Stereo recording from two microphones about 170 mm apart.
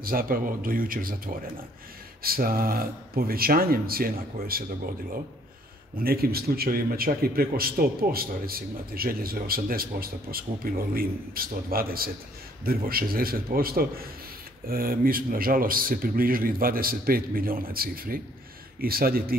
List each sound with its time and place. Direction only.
0.0 s speech: 60° right (ahead or behind)